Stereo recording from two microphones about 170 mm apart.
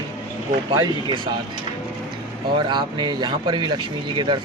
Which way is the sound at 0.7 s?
25° right (ahead or behind).